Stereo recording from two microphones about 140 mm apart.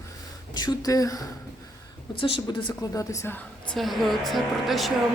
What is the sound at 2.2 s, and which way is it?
Speech, 40° left (ahead or behind).